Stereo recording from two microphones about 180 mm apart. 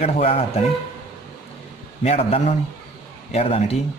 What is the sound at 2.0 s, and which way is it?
Speech, 35° left (ahead or behind).